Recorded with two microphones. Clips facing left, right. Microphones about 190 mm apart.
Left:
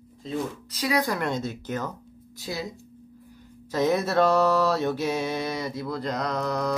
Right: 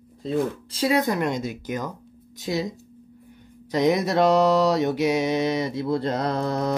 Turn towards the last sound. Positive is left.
turn(degrees=-25)  # may be behind; listen again after turning